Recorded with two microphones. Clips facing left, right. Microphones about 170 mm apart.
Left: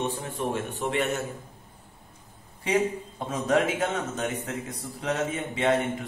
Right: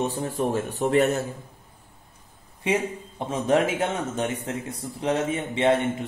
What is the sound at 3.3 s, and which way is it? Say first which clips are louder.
Speech: right 2 dB; 30° right (ahead or behind).